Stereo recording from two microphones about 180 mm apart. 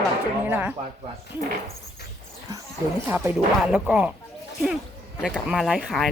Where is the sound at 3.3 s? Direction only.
5° right (ahead or behind).